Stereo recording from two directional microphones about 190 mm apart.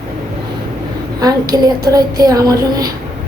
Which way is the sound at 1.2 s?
20° right (ahead or behind).